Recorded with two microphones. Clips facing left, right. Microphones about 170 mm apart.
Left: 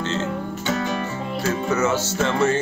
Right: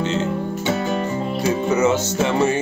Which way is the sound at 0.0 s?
15° right (ahead or behind).